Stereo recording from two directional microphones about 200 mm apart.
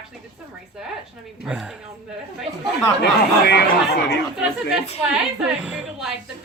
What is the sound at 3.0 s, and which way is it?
Speech, 55° left (ahead or behind).